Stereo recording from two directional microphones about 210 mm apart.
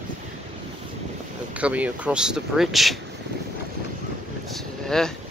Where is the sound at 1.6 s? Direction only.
5° right (ahead or behind).